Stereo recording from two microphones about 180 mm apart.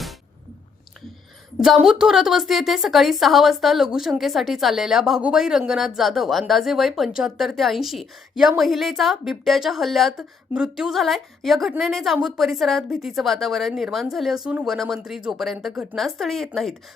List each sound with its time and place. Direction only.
1.6 s a woman's voice: centre (ahead or behind)